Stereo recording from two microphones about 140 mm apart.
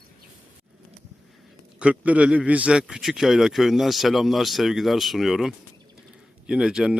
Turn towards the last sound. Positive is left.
turn(degrees=-5)  # may be behind; listen again after turning